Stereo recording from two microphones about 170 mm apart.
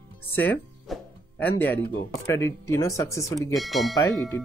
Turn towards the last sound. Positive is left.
turn(degrees=20)  # may be behind; listen again after turning